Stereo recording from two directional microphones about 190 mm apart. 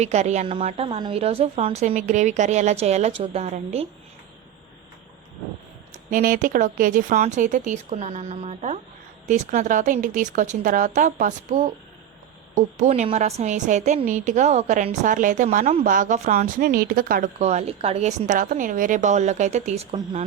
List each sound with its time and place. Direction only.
0.0 s a woman's voice: 35° right (ahead or behind)
6.1 s a woman's voice: 45° right (ahead or behind)
16.6 s a woman's voice: 55° right (ahead or behind)
17.4 s a woman's voice: 35° right (ahead or behind)